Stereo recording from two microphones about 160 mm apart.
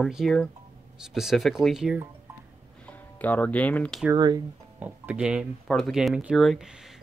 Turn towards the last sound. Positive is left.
turn(degrees=0)  # may be behind; listen again after turning